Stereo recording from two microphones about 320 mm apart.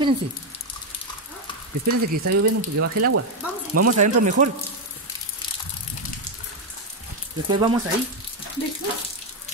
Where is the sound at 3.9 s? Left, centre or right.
Right.